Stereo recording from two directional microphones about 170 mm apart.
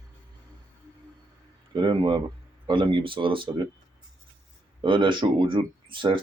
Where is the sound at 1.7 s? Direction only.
30° right (ahead or behind).